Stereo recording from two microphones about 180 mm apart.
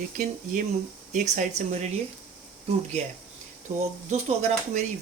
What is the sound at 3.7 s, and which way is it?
Speech, 35° right (ahead or behind).